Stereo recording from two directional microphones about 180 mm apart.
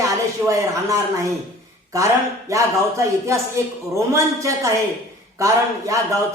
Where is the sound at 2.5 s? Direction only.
15° right (ahead or behind).